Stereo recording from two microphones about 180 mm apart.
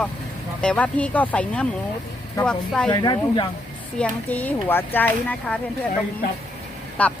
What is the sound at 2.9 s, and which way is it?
Speech, 25° left (ahead or behind).